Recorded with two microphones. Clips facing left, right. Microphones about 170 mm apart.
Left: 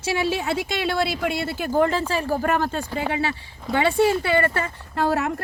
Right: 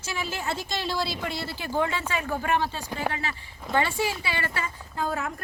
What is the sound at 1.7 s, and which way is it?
Speech, 40° left (ahead or behind).